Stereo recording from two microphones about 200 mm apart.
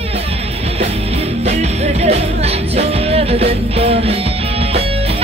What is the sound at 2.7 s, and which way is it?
Music, 30° right (ahead or behind).